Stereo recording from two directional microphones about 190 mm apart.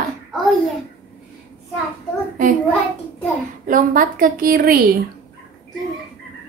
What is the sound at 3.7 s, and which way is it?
A woman's voice, 45° right (ahead or behind).